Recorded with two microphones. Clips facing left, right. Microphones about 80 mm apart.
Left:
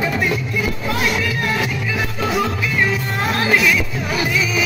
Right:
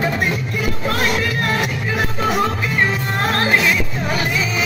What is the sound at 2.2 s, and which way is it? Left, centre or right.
Music, right.